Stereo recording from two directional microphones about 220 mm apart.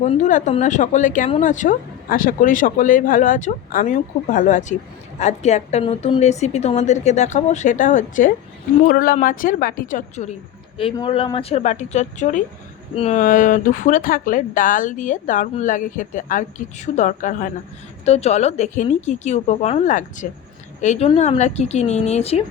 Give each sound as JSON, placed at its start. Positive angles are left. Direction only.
{"t": 0.0, "sound": "speech", "side_deg": 35}
{"t": 10.8, "sound": "speech", "side_deg": 25}